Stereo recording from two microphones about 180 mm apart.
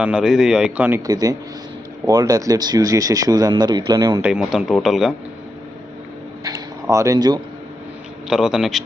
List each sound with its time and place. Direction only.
0.0 s a man's voice: 5° right (ahead or behind)
4.2 s speech: 5° right (ahead or behind)
6.4 s a sound: 15° right (ahead or behind)
8.3 s speech: 5° right (ahead or behind)